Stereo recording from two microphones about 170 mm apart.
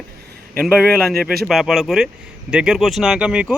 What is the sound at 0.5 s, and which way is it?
Speech, centre (ahead or behind).